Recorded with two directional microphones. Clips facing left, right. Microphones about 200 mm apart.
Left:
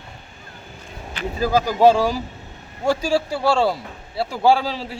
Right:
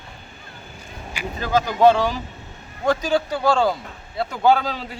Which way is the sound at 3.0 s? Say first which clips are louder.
Left 1 dB; 30° left (ahead or behind).